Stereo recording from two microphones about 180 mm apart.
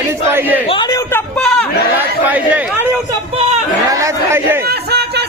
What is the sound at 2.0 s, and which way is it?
Chatter, 10° right (ahead or behind).